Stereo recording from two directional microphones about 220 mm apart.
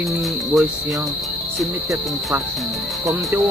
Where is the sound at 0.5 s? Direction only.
Centre (ahead or behind).